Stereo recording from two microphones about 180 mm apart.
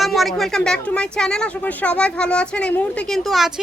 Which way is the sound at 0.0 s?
Centre (ahead or behind).